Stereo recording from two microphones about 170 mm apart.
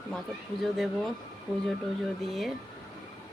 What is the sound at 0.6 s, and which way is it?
Speech, centre (ahead or behind).